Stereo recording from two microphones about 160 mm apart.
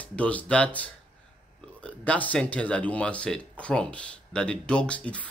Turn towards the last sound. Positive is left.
turn(degrees=10)  # may be behind; listen again after turning